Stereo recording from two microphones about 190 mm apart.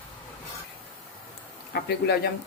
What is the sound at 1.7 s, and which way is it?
Speech, 60° left (ahead or behind).